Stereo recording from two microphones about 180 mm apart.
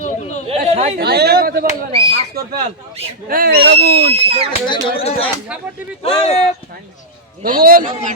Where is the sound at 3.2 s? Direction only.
55° right (ahead or behind); by 4.1 s 70° right (ahead or behind).